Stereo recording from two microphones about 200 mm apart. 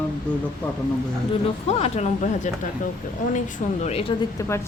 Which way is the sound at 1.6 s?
35° left (ahead or behind).